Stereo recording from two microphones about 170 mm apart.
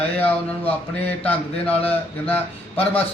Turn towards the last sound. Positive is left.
turn(degrees=10)  # may be behind; listen again after turning